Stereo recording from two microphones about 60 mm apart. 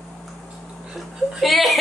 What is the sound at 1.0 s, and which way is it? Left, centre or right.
Speech, centre.